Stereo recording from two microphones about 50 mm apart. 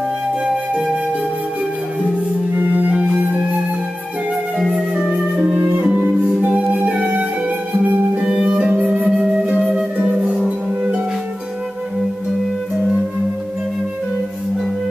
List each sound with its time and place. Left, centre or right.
0.5 s flute: centre
2.5 s music: right
2.9 s music: right
5.3 s music: right
8.2 s music: centre
9.1 s flute: centre
9.7 s music: right